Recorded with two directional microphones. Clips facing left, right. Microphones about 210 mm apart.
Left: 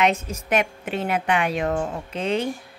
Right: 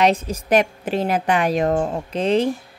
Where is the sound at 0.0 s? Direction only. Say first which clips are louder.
Right 4 dB; 35° right (ahead or behind).